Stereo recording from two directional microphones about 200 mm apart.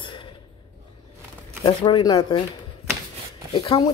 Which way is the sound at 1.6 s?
25° left (ahead or behind).